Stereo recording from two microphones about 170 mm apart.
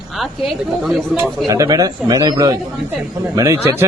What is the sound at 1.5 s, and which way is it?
A man's voice, 20° right (ahead or behind).